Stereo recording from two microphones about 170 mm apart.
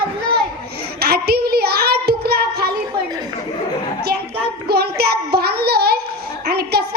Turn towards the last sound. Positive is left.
turn(degrees=-70)  # may be behind; listen again after turning